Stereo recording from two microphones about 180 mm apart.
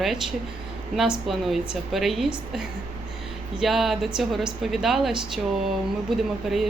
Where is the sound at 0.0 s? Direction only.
Centre (ahead or behind).